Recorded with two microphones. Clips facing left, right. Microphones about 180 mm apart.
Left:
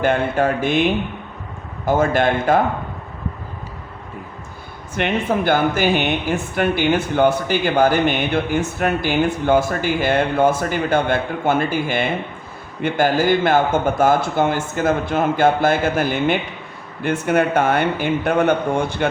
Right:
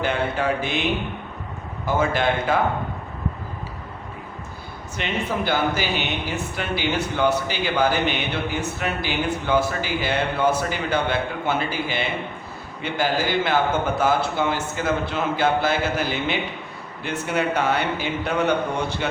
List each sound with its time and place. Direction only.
0.0 s speech: 50° left (ahead or behind)
1.8 s speech: 50° left (ahead or behind)
4.9 s speech: 55° left (ahead or behind)